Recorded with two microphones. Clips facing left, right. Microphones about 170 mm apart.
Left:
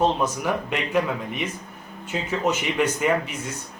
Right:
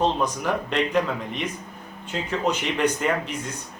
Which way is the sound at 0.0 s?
10° left (ahead or behind).